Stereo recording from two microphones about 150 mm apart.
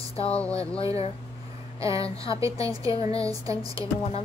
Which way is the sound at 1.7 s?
20° right (ahead or behind).